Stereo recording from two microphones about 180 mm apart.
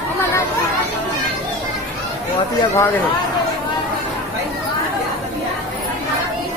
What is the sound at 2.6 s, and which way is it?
Speech, 15° left (ahead or behind).